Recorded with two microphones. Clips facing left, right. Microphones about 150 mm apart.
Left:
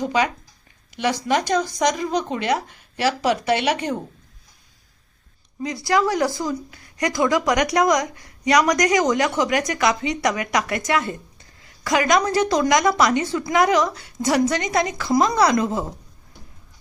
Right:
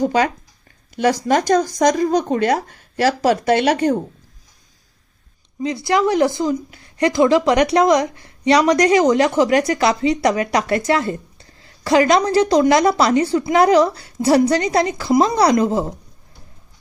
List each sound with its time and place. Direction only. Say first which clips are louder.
0.0 s speech: right 4 dB; 45° right (ahead or behind)
5.6 s speech: right 3 dB; 25° right (ahead or behind)